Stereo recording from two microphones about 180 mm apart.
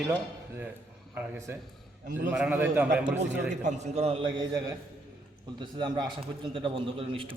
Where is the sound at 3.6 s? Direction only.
40° right (ahead or behind).